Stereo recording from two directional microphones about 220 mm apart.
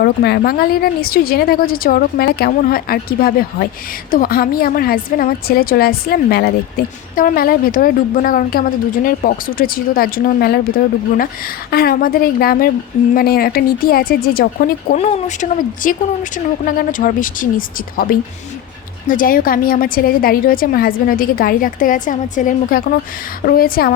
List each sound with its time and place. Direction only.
0.0 s a woman's voice: 45° left (ahead or behind)
11.7 s a woman's voice: 45° left (ahead or behind)